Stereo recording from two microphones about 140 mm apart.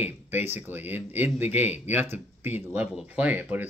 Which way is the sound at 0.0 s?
15° right (ahead or behind).